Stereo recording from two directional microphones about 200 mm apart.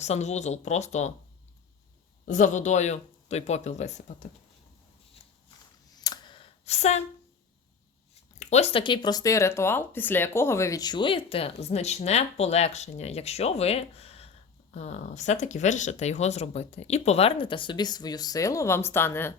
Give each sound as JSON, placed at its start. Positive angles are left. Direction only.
{"t": 0.0, "sound": "speech", "side_deg": 35}
{"t": 2.2, "sound": "speech", "side_deg": 40}
{"t": 5.9, "sound": "computer keyboard", "side_deg": 20}
{"t": 8.4, "sound": "speech", "side_deg": 35}